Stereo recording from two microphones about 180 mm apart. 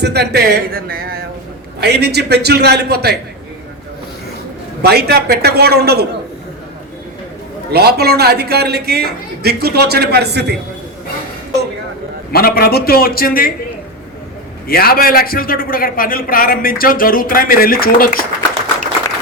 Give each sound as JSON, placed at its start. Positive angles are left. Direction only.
{"t": 0.0, "sound": "a man's voice", "side_deg": -65}
{"t": 4.8, "sound": "a man's voice", "side_deg": -60}
{"t": 7.7, "sound": "a man's voice", "side_deg": -60}
{"t": 12.3, "sound": "a man's voice", "side_deg": 55}
{"t": 14.7, "sound": "a man's voice", "side_deg": 55}